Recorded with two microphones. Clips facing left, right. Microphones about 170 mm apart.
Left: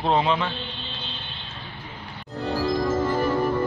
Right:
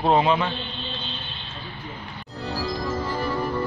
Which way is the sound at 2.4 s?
50° left (ahead or behind).